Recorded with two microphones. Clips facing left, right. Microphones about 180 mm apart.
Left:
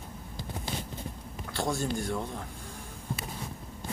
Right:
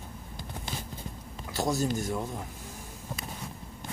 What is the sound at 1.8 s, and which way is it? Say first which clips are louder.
Speech: right 2 dB; 45° right (ahead or behind).